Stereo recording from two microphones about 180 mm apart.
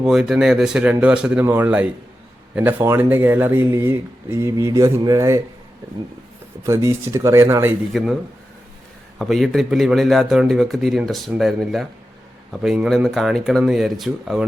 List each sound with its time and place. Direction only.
0.0 s a man's voice: centre (ahead or behind)
6.7 s speech: 15° right (ahead or behind)
7.9 s a man's voice: centre (ahead or behind)
9.1 s a man's voice: centre (ahead or behind)